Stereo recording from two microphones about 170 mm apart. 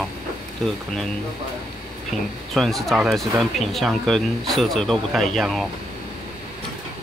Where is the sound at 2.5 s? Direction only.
Centre (ahead or behind).